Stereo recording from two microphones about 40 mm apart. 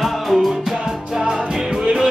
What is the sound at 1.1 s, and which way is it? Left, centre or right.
Music, centre.